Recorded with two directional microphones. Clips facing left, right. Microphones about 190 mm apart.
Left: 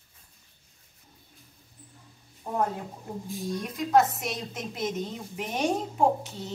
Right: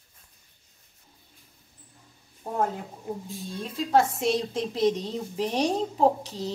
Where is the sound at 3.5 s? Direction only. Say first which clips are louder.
Even; 30° right (ahead or behind).